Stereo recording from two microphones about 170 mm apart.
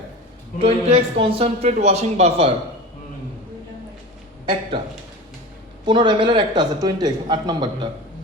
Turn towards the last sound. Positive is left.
turn(degrees=-25)  # may be behind; listen again after turning